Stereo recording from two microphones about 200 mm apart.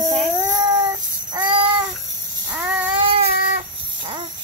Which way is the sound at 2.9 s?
25° right (ahead or behind).